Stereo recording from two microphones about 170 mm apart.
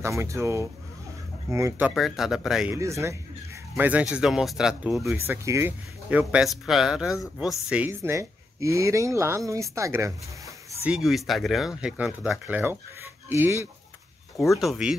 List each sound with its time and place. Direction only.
0.0 s speech: 15° right (ahead or behind)
2.7 s speech: 15° right (ahead or behind)
14.4 s speech: centre (ahead or behind)